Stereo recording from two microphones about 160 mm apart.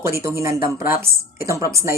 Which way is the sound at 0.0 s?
15° right (ahead or behind).